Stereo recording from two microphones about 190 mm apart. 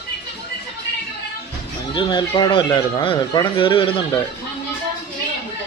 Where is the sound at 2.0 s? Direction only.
25° left (ahead or behind).